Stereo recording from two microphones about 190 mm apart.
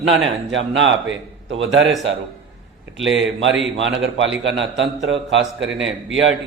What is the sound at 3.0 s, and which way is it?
A man's voice, 75° right (ahead or behind).